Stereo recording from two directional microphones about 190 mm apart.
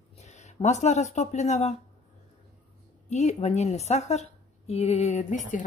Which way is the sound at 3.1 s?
35° left (ahead or behind).